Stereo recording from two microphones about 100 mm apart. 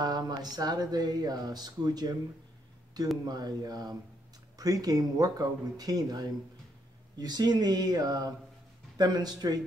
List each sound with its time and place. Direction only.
0.0 s speech: 40° right (ahead or behind)
3.3 s speech: 45° right (ahead or behind)